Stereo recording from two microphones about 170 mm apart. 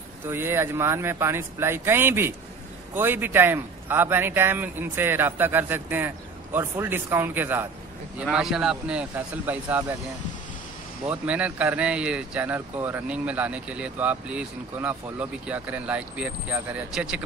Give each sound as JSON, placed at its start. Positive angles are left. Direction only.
{"t": 0.3, "sound": "speech", "side_deg": -15}
{"t": 11.1, "sound": "speech", "side_deg": -5}